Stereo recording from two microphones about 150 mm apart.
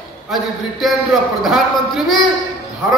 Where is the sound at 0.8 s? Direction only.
Centre (ahead or behind).